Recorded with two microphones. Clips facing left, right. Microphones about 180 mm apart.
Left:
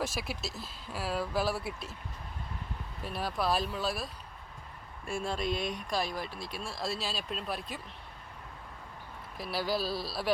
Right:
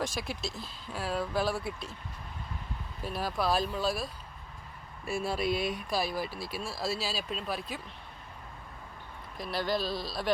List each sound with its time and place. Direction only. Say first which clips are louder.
0.0 s speech: right 1 dB; 5° left (ahead or behind)
3.0 s speech: right 1 dB; centre (ahead or behind)
9.4 s speech: right 1 dB; 5° left (ahead or behind)